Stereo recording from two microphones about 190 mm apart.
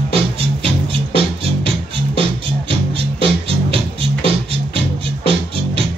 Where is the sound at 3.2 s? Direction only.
30° right (ahead or behind).